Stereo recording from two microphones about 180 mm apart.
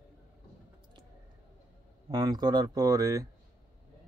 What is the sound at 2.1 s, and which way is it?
A man's voice, 20° right (ahead or behind).